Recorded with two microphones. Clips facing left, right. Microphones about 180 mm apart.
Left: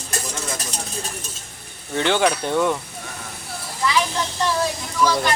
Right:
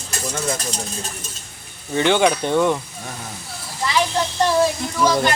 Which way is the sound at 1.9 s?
5° right (ahead or behind).